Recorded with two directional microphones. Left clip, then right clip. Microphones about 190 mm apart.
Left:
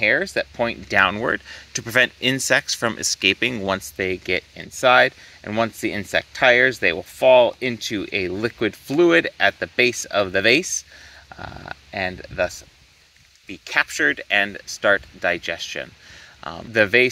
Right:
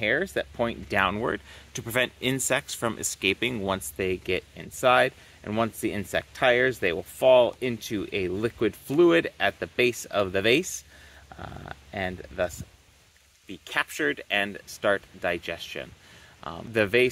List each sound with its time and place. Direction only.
0.0 s speech: 25° left (ahead or behind)